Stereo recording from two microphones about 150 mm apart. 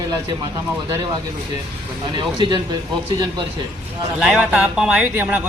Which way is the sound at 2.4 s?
30° right (ahead or behind).